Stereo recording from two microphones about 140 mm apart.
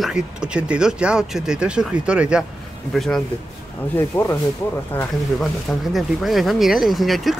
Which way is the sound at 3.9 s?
15° left (ahead or behind).